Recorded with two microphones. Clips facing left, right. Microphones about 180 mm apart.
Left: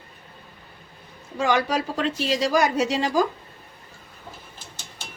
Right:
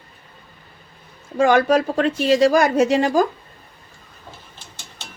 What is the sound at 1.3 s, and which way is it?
Speech, 50° right (ahead or behind).